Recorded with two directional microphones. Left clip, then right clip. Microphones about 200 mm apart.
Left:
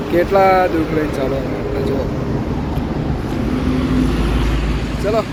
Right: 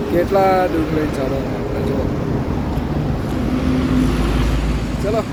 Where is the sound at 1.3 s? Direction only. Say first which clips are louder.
Left 1 dB; 45° left (ahead or behind).